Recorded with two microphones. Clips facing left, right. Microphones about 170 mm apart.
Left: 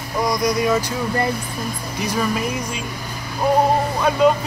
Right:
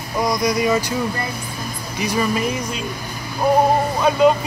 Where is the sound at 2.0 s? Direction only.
Centre (ahead or behind).